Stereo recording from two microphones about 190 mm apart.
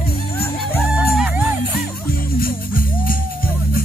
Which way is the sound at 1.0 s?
5° right (ahead or behind).